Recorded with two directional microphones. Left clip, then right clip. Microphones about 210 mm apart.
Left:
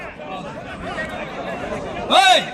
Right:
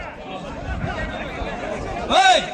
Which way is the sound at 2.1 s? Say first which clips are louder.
Left 2 dB; 55° left (ahead or behind).